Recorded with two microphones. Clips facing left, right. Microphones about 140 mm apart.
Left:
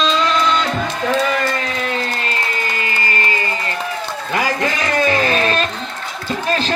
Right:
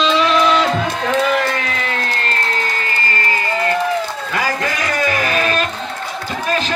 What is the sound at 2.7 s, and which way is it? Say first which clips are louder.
Music: even; 15° left (ahead or behind).